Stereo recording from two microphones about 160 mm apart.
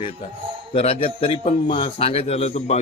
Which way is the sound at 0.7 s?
35° left (ahead or behind).